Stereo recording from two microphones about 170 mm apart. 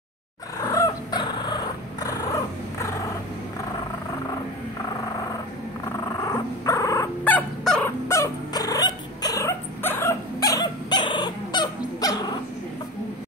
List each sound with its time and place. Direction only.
0.7 s dog: 20° left (ahead or behind)
6.2 s fowl: 20° left (ahead or behind)
8.1 s dog: 20° left (ahead or behind)